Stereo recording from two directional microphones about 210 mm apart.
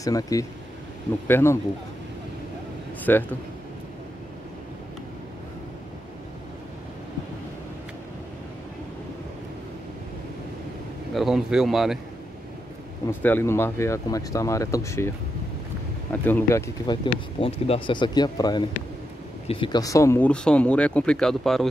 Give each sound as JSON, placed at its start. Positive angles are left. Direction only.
{"t": 0.0, "sound": "speech", "side_deg": 15}
{"t": 3.0, "sound": "a man's voice", "side_deg": 10}
{"t": 11.1, "sound": "a man's voice", "side_deg": 0}
{"t": 13.2, "sound": "speech", "side_deg": 10}
{"t": 16.1, "sound": "speech", "side_deg": 10}